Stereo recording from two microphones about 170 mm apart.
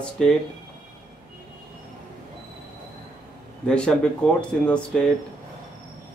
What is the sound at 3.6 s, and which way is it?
Speech, 5° left (ahead or behind).